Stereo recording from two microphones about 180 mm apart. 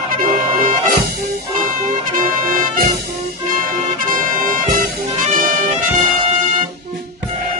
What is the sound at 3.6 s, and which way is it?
Brass instrument, 50° right (ahead or behind).